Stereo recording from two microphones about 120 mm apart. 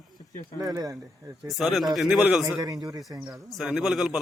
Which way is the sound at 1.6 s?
Centre (ahead or behind).